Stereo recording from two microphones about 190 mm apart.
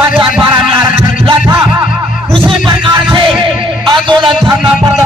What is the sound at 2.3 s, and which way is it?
Speech, 5° left (ahead or behind).